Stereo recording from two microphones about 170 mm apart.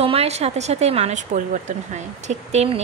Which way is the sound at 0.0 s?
35° right (ahead or behind).